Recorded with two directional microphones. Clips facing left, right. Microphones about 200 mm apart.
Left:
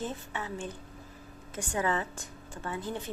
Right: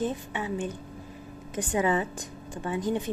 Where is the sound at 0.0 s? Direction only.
15° right (ahead or behind).